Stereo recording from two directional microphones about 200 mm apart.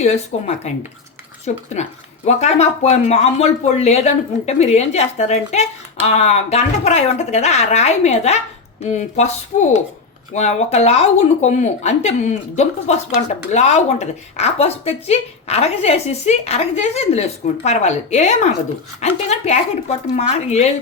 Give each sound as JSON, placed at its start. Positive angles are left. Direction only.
{"t": 0.0, "sound": "a woman's voice", "side_deg": 30}